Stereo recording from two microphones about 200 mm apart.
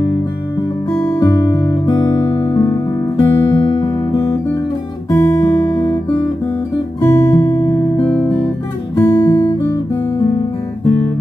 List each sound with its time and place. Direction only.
1.0 s music: 15° left (ahead or behind)
5.1 s guitar: 15° left (ahead or behind)
7.0 s guitar: 10° left (ahead or behind)